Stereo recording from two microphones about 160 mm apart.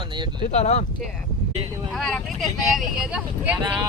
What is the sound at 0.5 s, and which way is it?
Speech, 45° left (ahead or behind).